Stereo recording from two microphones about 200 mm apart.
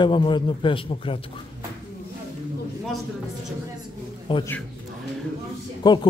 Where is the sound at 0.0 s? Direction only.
25° left (ahead or behind).